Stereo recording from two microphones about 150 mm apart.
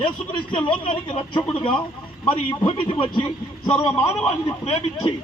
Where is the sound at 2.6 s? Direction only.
35° left (ahead or behind).